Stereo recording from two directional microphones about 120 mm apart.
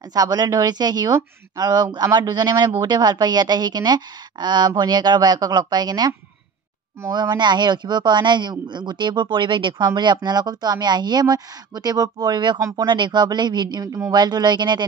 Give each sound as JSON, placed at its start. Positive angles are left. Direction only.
{"t": 0.1, "sound": "speech", "side_deg": -30}